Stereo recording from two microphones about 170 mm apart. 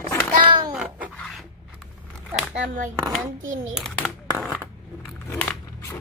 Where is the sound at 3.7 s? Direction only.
Centre (ahead or behind).